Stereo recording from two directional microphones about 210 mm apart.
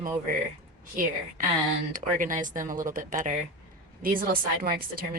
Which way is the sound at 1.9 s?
40° right (ahead or behind).